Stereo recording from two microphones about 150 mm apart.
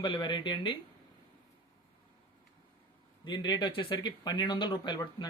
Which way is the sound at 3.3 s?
30° left (ahead or behind).